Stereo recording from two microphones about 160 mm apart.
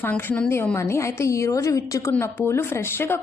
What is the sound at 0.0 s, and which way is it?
A woman's voice, 10° left (ahead or behind).